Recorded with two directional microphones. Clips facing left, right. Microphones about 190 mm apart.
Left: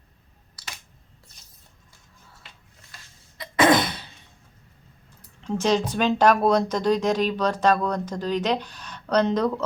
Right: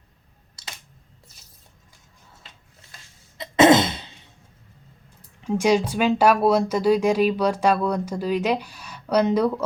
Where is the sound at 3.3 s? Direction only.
25° right (ahead or behind).